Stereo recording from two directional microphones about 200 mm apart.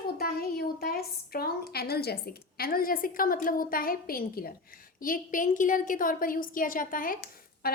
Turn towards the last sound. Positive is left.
turn(degrees=45)  # may be behind; listen again after turning